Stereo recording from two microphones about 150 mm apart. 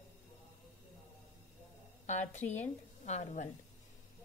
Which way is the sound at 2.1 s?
55° left (ahead or behind).